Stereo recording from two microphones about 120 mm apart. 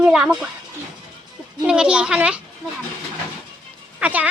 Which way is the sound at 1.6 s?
5° right (ahead or behind).